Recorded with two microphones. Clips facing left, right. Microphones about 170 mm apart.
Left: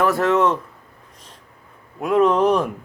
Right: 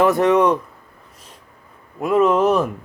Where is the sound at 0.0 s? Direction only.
20° right (ahead or behind).